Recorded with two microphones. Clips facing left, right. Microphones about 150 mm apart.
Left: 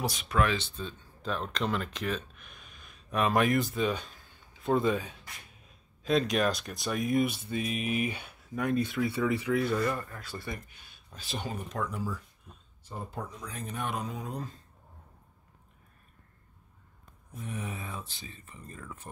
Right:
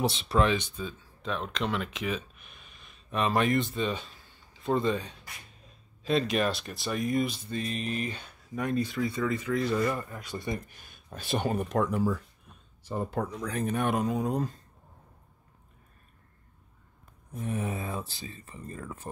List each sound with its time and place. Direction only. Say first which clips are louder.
0.0 s speech: right 3 dB; 30° right (ahead or behind); by 9.8 s 10° left (ahead or behind)
9.9 s speech: right 3 dB; 15° right (ahead or behind)
10.8 s speech: right 7 dB; 50° right (ahead or behind)
12.8 s speech: right 8 dB; 85° right; by 14.5 s 45° right (ahead or behind)
17.4 s speech: right 6 dB; 40° right (ahead or behind)